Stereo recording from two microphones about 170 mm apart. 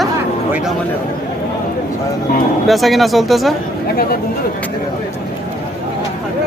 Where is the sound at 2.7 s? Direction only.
Centre (ahead or behind).